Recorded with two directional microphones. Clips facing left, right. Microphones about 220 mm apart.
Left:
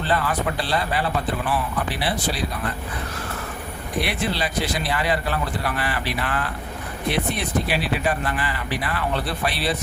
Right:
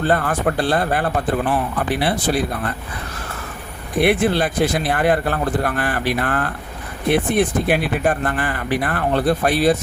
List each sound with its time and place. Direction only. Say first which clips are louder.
0.0 s speech: right 5 dB; 50° right (ahead or behind)
4.0 s speech: right 11 dB; 50° right (ahead or behind)